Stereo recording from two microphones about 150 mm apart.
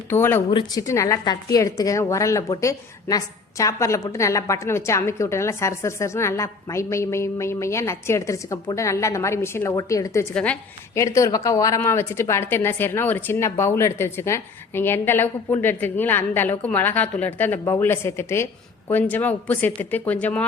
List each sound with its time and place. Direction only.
0.1 s a woman's voice: 15° left (ahead or behind)
10.3 s a woman's voice: 10° left (ahead or behind)
10.9 s a woman's voice: 20° left (ahead or behind)